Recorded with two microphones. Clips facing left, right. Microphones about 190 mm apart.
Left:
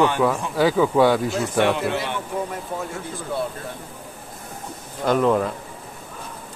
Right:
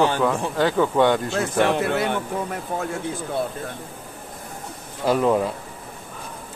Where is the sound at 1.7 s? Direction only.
50° right (ahead or behind).